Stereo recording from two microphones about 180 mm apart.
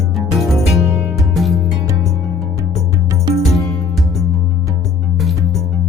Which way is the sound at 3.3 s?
25° right (ahead or behind).